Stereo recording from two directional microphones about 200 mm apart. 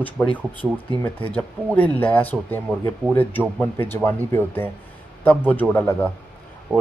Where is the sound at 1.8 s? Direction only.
10° left (ahead or behind).